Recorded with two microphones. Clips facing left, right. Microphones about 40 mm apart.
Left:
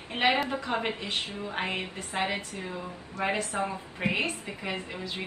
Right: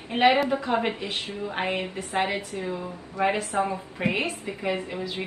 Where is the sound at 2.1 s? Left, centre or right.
Right.